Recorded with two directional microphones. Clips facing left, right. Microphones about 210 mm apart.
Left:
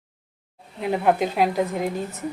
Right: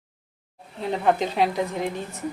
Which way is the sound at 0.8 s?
10° left (ahead or behind).